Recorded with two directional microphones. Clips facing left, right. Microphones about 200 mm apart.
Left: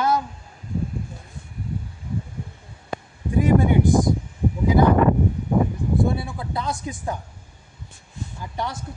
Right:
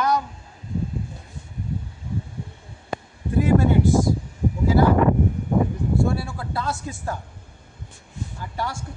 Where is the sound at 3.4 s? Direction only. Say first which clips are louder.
Even; 15° left (ahead or behind).